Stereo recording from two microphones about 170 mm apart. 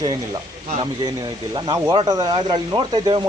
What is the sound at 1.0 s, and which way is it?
Speech, 25° right (ahead or behind).